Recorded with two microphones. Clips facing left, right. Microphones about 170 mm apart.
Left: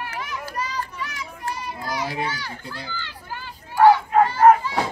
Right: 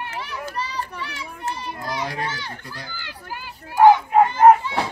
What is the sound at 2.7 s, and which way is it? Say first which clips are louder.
Crowd: left 2 dB; 10° right (ahead or behind).